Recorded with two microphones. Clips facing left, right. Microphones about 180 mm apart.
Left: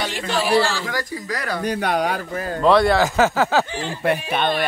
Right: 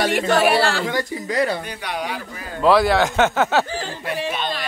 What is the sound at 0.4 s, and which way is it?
Speech, 65° right (ahead or behind).